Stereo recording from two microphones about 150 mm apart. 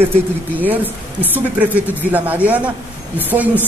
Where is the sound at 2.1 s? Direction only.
10° right (ahead or behind).